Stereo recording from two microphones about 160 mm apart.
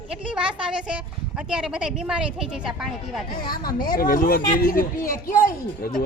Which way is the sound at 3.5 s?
65° left (ahead or behind).